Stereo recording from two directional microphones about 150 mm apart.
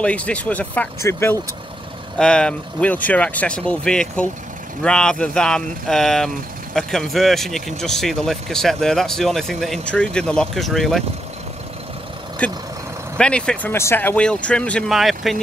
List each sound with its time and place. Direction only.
0.0 s speech: 10° left (ahead or behind)
2.1 s speech: 5° left (ahead or behind)
12.4 s speech: 10° left (ahead or behind)